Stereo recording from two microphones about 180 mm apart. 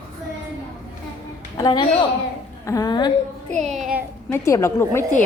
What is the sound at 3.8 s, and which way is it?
Speech, 5° right (ahead or behind).